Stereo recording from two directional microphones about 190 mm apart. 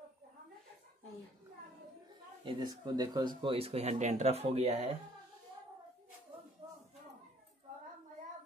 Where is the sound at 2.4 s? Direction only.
25° right (ahead or behind).